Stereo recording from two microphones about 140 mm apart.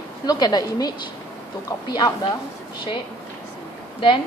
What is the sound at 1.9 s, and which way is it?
Speech, 30° left (ahead or behind).